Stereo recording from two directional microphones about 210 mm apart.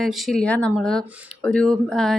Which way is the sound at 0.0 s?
Centre (ahead or behind).